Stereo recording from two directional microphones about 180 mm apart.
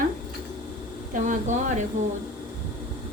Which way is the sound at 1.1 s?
45° right (ahead or behind).